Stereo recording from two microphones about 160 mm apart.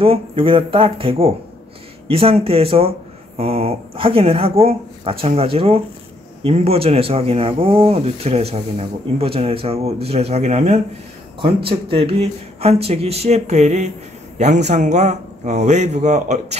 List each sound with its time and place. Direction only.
0.0 s a man's voice: 35° right (ahead or behind)